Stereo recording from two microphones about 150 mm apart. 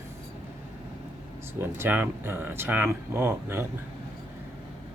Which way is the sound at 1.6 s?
15° right (ahead or behind).